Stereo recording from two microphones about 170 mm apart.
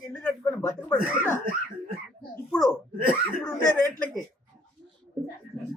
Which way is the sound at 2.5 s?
Centre (ahead or behind).